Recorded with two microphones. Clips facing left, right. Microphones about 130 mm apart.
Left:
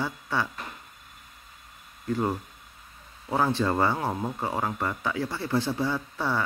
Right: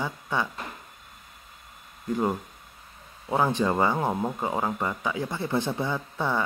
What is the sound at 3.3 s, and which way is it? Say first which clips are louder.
Speech: right 1 dB; 15° right (ahead or behind).